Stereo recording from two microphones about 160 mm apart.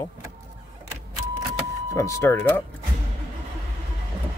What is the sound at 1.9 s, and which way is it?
Speech, 15° left (ahead or behind).